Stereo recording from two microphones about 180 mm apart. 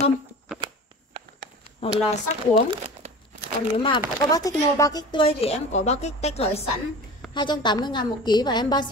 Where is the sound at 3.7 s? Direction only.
25° left (ahead or behind).